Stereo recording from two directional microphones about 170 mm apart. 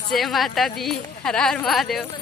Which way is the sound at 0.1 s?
Centre (ahead or behind).